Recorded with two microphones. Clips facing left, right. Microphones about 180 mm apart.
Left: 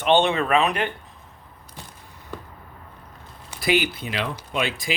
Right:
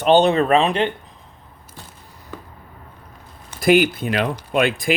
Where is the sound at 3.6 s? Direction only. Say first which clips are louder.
Right 7 dB; 50° right (ahead or behind).